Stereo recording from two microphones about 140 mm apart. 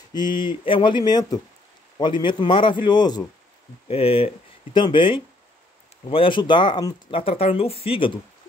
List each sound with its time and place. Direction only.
0.1 s speech: 35° left (ahead or behind)
3.9 s speech: 40° left (ahead or behind)
7.2 s speech: 40° left (ahead or behind)